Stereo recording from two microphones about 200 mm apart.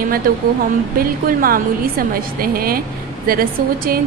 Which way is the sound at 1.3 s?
45° right (ahead or behind).